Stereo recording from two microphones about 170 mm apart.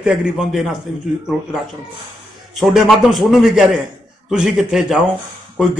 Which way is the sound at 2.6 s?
Centre (ahead or behind).